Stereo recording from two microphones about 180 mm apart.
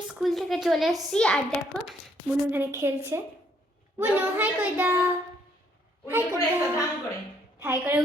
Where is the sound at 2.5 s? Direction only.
15° right (ahead or behind).